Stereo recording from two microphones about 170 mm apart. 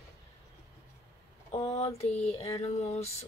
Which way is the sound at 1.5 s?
35° left (ahead or behind).